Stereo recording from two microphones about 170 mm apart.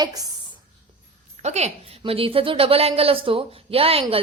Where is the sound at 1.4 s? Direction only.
40° right (ahead or behind).